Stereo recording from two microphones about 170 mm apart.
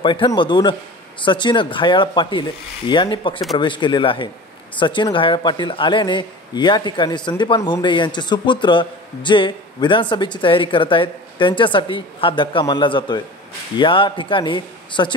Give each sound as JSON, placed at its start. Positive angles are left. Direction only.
{"t": 0.0, "sound": "speech", "side_deg": 30}